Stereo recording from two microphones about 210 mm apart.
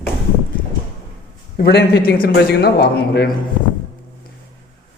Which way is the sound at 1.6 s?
50° left (ahead or behind).